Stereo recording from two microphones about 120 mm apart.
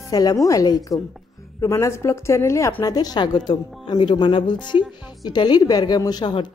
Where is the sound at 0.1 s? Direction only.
30° left (ahead or behind).